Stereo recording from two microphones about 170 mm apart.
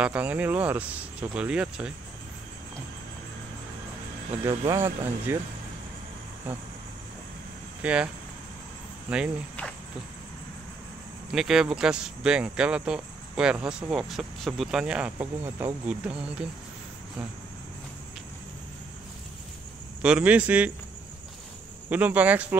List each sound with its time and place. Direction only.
0.0 s speech: 10° right (ahead or behind)
4.5 s speech: 20° right (ahead or behind)
7.8 s speech: 5° right (ahead or behind)
9.1 s speech: 5° right (ahead or behind)
11.3 s speech: 5° right (ahead or behind)
20.0 s speech: 5° right (ahead or behind)
21.8 s speech: 10° right (ahead or behind)